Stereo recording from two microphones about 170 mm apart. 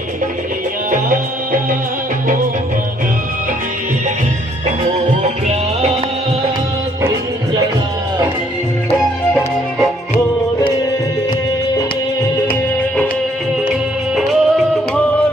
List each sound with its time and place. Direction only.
0.9 s music: 55° right (ahead or behind)
5.2 s music: 40° right (ahead or behind)
8.9 s music: centre (ahead or behind)
13.7 s music: 5° right (ahead or behind)